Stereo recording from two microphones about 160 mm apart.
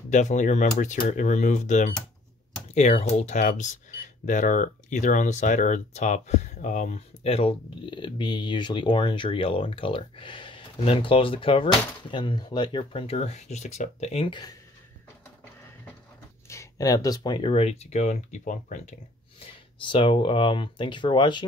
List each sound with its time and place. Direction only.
0.1 s speech: 50° left (ahead or behind); by 14.5 s 30° left (ahead or behind)
16.4 s speech: 20° left (ahead or behind); by 18.9 s 55° left (ahead or behind)
19.8 s speech: 30° left (ahead or behind)